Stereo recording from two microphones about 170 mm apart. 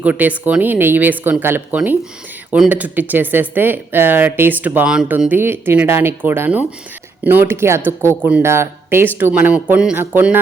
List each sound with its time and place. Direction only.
0.0 s speech: 10° right (ahead or behind)